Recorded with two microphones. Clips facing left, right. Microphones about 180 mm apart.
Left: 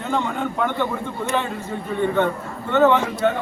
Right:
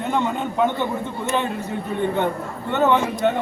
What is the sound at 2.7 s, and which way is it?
Speech, 15° right (ahead or behind).